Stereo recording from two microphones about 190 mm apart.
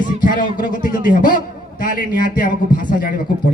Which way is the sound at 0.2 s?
45° left (ahead or behind).